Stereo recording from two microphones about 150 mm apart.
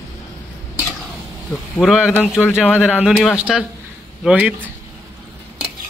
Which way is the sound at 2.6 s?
10° left (ahead or behind).